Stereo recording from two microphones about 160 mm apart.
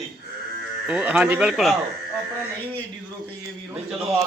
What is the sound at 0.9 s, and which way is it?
Speech, 5° right (ahead or behind).